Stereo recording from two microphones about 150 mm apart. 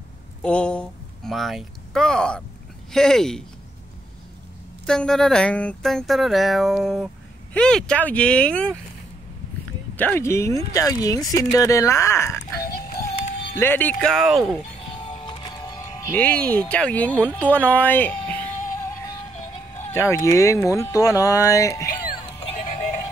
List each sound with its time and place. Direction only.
0.4 s speech: 5° left (ahead or behind)
4.8 s speech: 5° left (ahead or behind)
9.9 s speech: 15° left (ahead or behind)
12.6 s music: 80° left
13.6 s speech: 15° left (ahead or behind); by 14.6 s 5° right (ahead or behind)
14.9 s music: 35° left (ahead or behind)
16.1 s speech: 10° left (ahead or behind)
19.9 s speech: 20° left (ahead or behind)
22.5 s music: 50° left (ahead or behind)